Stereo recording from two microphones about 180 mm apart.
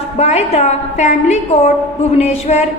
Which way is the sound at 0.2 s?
35° left (ahead or behind).